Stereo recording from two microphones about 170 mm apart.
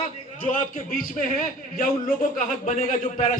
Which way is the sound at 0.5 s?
55° left (ahead or behind).